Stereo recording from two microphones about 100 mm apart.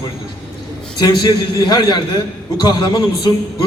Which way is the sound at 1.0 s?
40° left (ahead or behind).